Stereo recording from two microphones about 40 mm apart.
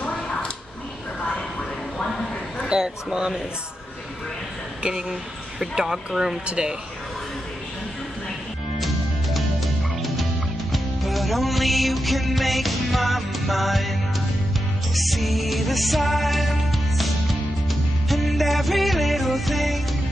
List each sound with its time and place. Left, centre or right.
0.1 s a sound: left
2.7 s speech: right
5.6 s speech: centre
6.4 s speech: right
8.7 s music: centre
15.0 s music: centre